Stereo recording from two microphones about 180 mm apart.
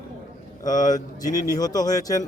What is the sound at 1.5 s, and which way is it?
Speech, 20° left (ahead or behind).